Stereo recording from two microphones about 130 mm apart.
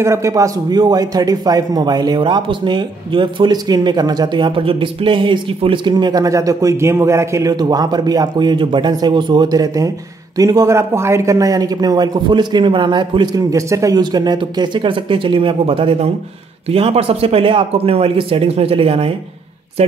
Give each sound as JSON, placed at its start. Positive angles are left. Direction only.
{"t": 0.0, "sound": "a man's voice", "side_deg": -20}